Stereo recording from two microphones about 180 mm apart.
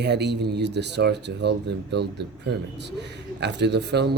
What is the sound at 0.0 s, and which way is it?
Speech, 70° right (ahead or behind).